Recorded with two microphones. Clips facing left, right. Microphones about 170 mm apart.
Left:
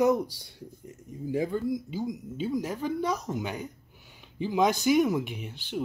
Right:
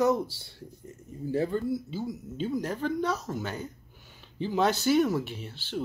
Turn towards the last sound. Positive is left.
turn(degrees=15)  # may be behind; listen again after turning